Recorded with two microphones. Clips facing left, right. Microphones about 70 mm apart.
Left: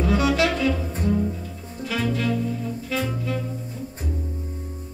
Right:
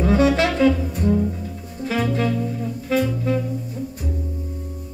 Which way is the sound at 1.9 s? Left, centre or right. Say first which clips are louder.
Right 3 dB; right.